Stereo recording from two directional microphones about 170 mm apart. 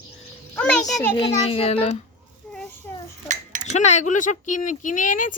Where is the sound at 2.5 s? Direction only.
5° left (ahead or behind).